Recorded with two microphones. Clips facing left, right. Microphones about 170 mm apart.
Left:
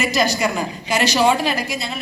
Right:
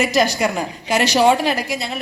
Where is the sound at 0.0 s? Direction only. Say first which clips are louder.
Right 2 dB; 65° right (ahead or behind).